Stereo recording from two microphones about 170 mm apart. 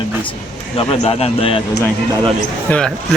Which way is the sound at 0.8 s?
30° left (ahead or behind).